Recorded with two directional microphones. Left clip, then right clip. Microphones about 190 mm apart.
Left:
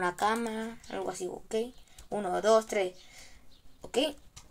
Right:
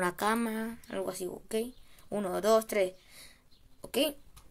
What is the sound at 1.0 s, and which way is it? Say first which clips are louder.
Speech: left 1 dB; 40° right (ahead or behind).